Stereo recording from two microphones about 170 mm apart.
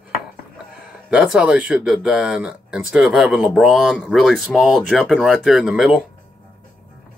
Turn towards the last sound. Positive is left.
turn(degrees=-5)  # may be behind; listen again after turning